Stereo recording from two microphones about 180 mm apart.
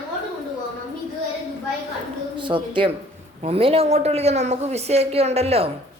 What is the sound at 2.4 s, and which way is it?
A woman's voice, 25° right (ahead or behind).